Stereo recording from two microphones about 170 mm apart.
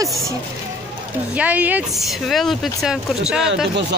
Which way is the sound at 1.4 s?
10° right (ahead or behind).